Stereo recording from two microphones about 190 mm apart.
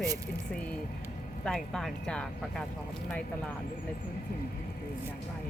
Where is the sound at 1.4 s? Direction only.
Centre (ahead or behind).